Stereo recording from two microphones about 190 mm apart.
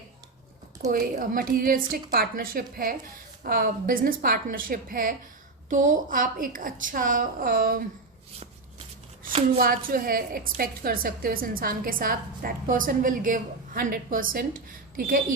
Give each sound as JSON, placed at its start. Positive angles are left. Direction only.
{"t": 0.9, "sound": "a woman's voice", "side_deg": -50}
{"t": 9.6, "sound": "a woman's voice", "side_deg": -50}